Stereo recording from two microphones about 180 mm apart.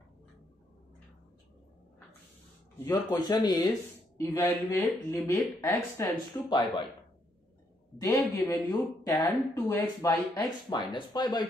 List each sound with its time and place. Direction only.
2.8 s speech: 10° left (ahead or behind)
3.1 s speech: 25° left (ahead or behind)
8.0 s speech: 15° left (ahead or behind)